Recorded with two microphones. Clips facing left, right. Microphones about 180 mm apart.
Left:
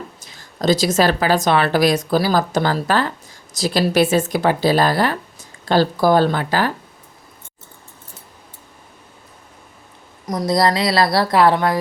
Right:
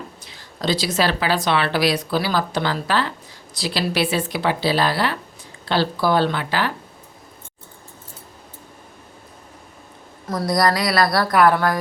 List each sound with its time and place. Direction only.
0.2 s speech: 45° left (ahead or behind)
10.2 s a woman's voice: 20° left (ahead or behind)